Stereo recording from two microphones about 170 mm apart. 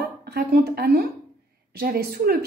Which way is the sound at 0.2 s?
70° right (ahead or behind).